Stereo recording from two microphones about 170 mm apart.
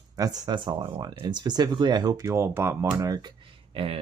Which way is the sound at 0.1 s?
20° right (ahead or behind).